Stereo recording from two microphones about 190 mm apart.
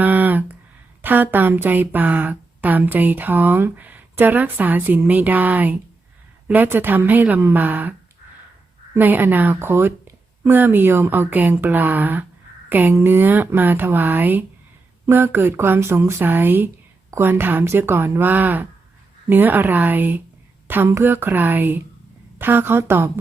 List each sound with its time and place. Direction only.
0.0 s a sound: 10° right (ahead or behind)
1.0 s speech: 10° right (ahead or behind)
9.0 s speech: 10° right (ahead or behind)